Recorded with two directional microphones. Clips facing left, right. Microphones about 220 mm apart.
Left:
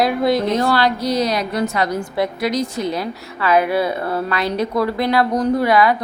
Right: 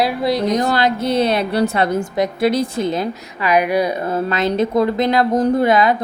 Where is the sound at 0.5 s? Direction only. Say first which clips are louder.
Even; 20° right (ahead or behind).